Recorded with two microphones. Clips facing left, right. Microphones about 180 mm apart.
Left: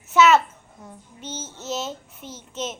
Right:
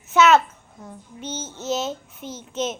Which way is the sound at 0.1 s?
Centre (ahead or behind).